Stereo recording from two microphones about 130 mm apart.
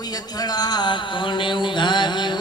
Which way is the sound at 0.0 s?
30° left (ahead or behind).